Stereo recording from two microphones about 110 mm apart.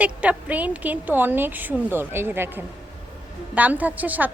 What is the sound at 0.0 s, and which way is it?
A woman's voice, 15° right (ahead or behind).